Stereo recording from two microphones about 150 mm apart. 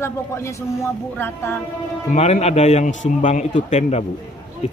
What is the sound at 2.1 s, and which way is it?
A man's voice, 45° left (ahead or behind).